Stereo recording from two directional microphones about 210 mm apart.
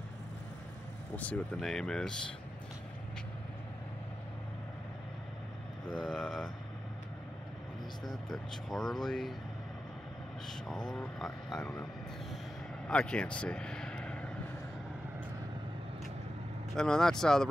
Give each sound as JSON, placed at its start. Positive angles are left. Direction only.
{"t": 1.1, "sound": "speech", "side_deg": 5}
{"t": 5.9, "sound": "vehicle", "side_deg": 5}
{"t": 8.0, "sound": "speech", "side_deg": 0}
{"t": 10.4, "sound": "speech", "side_deg": 0}
{"t": 12.8, "sound": "vehicle", "side_deg": 5}
{"t": 16.7, "sound": "speech", "side_deg": 5}